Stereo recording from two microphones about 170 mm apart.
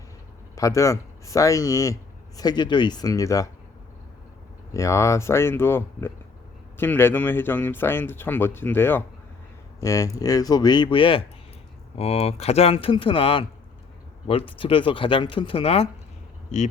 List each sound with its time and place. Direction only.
0.5 s speech: 15° left (ahead or behind)
4.7 s speech: 20° left (ahead or behind); by 15.9 s 35° left (ahead or behind)